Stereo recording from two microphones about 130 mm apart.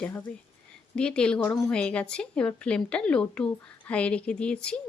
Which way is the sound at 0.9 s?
5° left (ahead or behind).